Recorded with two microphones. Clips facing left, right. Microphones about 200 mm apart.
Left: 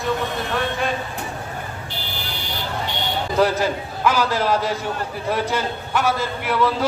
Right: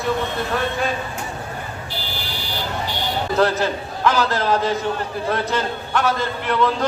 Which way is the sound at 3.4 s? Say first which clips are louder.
Left 1 dB; 10° left (ahead or behind).